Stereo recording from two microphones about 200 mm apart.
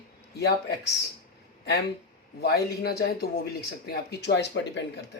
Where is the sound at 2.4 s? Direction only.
55° left (ahead or behind).